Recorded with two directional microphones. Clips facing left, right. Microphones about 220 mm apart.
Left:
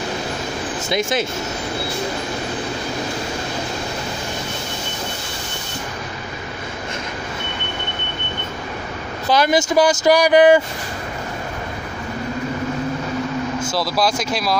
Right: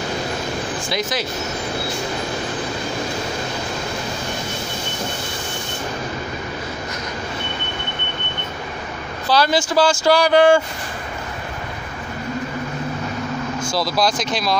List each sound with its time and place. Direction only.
0.8 s speech: 25° left (ahead or behind)
9.3 s speech: 20° left (ahead or behind)
13.6 s speech: 5° left (ahead or behind)